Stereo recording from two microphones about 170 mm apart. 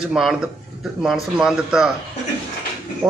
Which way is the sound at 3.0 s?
5° right (ahead or behind).